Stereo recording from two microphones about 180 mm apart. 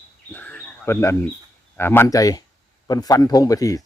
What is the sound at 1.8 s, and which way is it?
A man's voice, 15° left (ahead or behind).